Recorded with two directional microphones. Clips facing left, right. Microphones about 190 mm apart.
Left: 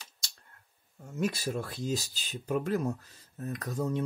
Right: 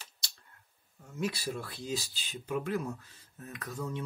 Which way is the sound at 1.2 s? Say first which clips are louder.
Left 3 dB; 45° left (ahead or behind).